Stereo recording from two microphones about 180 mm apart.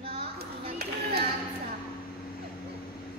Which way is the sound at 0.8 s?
60° right (ahead or behind).